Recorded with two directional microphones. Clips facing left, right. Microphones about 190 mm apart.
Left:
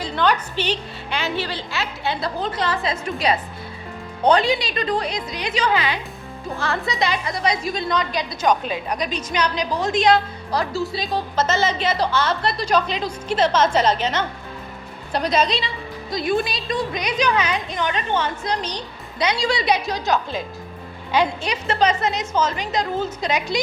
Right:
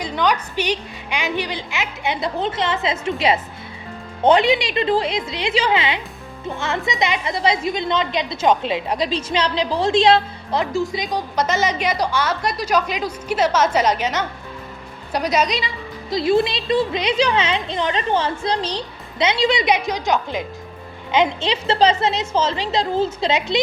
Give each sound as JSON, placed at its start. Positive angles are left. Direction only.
{"t": 0.0, "sound": "a woman's voice", "side_deg": -10}
{"t": 16.0, "sound": "a woman's voice", "side_deg": -25}